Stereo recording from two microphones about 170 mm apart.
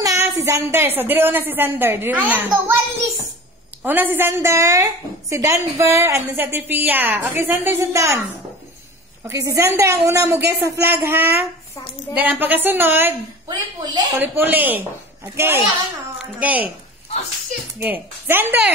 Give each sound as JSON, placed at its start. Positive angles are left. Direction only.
{"t": 0.0, "sound": "a woman's voice", "side_deg": -20}
{"t": 9.2, "sound": "a woman's voice", "side_deg": -15}
{"t": 13.5, "sound": "a woman's voice", "side_deg": -25}
{"t": 14.2, "sound": "a woman's voice", "side_deg": -10}
{"t": 17.7, "sound": "a woman's voice", "side_deg": -10}